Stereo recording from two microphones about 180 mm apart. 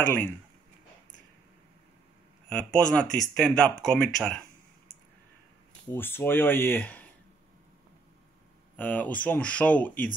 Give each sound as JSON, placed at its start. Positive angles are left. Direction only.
{"t": 0.0, "sound": "speech", "side_deg": 10}
{"t": 2.5, "sound": "speech", "side_deg": 5}
{"t": 5.9, "sound": "speech", "side_deg": 10}
{"t": 8.7, "sound": "speech", "side_deg": 10}